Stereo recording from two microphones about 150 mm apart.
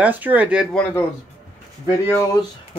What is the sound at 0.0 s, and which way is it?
Speech, 10° right (ahead or behind).